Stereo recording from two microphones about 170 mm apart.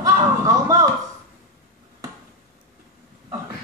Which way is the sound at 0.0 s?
20° right (ahead or behind).